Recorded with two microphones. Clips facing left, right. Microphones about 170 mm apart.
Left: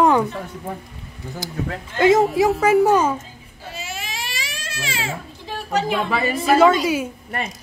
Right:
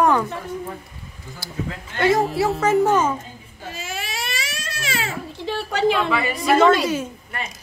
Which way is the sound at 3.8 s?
45° right (ahead or behind).